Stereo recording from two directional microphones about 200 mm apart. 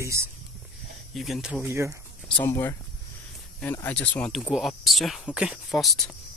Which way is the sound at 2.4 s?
10° left (ahead or behind).